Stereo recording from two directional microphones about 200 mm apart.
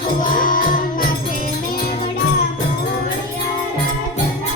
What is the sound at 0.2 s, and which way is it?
Music, 45° left (ahead or behind).